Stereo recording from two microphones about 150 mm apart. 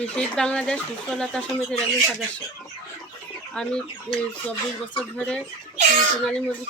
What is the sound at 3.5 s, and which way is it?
Speech, 5° left (ahead or behind).